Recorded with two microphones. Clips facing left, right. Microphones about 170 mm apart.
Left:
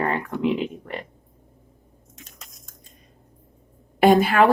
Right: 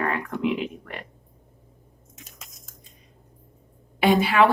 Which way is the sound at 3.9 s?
45° left (ahead or behind).